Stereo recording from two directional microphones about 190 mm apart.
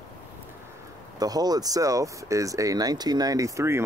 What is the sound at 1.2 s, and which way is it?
Speech, 20° right (ahead or behind).